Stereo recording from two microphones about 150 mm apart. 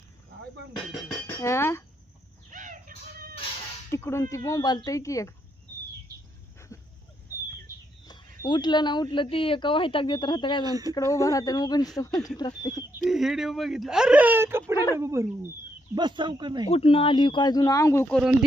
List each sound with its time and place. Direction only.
1.4 s speech: 15° left (ahead or behind)
2.5 s a sound: 60° right (ahead or behind)
3.9 s speech: 20° left (ahead or behind)
8.0 s speech: 30° left (ahead or behind)
10.7 s speech: 25° right (ahead or behind)
10.9 s speech: 20° left (ahead or behind)
13.1 s speech: centre (ahead or behind)
16.0 s speech: 30° right (ahead or behind)
16.6 s speech: 40° left (ahead or behind); by 18.1 s 20° left (ahead or behind)
18.1 s speech: 5° right (ahead or behind)